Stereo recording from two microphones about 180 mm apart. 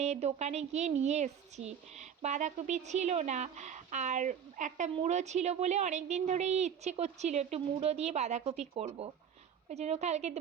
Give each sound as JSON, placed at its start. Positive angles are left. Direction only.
{"t": 0.0, "sound": "a woman's voice", "side_deg": -40}